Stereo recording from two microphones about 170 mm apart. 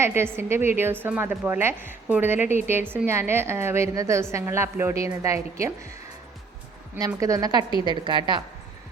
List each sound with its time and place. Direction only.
0.0 s a woman's voice: 15° right (ahead or behind)
7.2 s a woman's voice: 20° right (ahead or behind)